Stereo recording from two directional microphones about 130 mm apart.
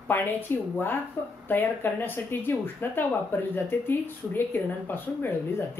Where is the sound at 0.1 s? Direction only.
15° left (ahead or behind).